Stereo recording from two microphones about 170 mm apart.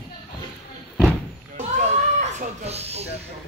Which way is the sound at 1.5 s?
40° right (ahead or behind).